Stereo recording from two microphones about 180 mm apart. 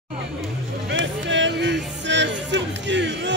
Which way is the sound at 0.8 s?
90° right.